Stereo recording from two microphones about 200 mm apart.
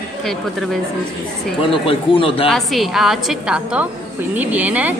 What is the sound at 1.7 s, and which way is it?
Speech, 25° left (ahead or behind).